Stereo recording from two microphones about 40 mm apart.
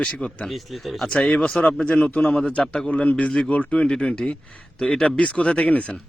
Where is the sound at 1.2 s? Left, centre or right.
Left.